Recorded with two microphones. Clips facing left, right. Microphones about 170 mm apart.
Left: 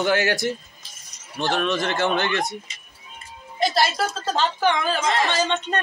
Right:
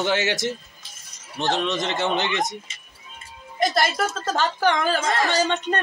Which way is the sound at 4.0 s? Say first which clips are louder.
Even; 50° right (ahead or behind).